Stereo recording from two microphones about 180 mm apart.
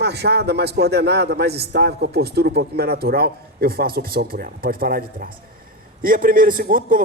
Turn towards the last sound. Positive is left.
turn(degrees=-50)  # may be behind; listen again after turning